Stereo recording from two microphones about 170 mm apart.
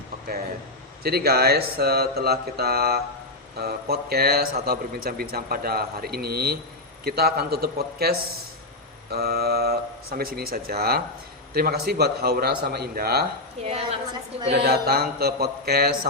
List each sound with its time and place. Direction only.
1.0 s a man's voice: 65° right (ahead or behind)
13.7 s a woman's voice: 35° right (ahead or behind)
14.5 s a man's voice: 65° right (ahead or behind)